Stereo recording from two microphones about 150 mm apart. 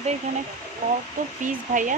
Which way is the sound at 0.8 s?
70° right (ahead or behind).